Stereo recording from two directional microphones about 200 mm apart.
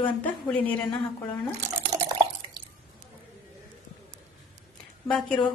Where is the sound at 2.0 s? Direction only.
20° right (ahead or behind).